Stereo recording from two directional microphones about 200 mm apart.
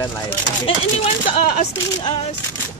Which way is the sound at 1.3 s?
30° left (ahead or behind).